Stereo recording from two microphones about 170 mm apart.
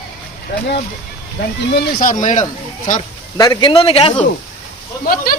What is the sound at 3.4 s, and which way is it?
Speech, 25° left (ahead or behind).